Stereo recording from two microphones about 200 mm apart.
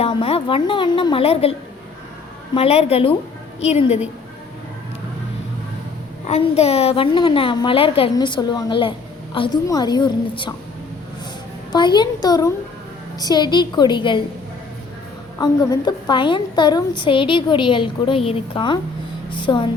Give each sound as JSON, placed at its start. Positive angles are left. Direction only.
{"t": 0.0, "sound": "a woman's voice", "side_deg": 30}
{"t": 2.6, "sound": "a woman's voice", "side_deg": 30}
{"t": 6.2, "sound": "a woman's voice", "side_deg": 30}
{"t": 11.7, "sound": "a woman's voice", "side_deg": 20}
{"t": 15.4, "sound": "a woman's voice", "side_deg": 20}